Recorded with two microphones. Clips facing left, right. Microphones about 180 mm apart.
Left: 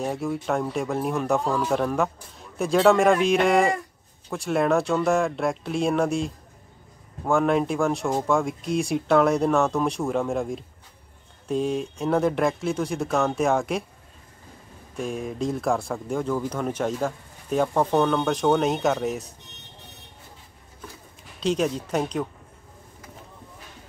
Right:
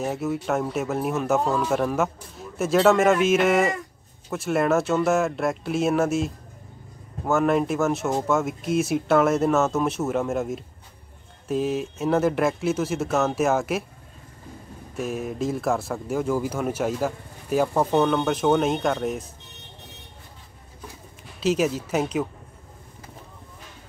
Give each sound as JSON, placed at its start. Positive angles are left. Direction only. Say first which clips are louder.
{"t": 0.0, "sound": "speech", "louder": "right 1 dB", "side_deg": -5}
{"t": 15.0, "sound": "speech", "louder": "right 1 dB", "side_deg": -5}
{"t": 21.4, "sound": "speech", "louder": "right 2 dB", "side_deg": -5}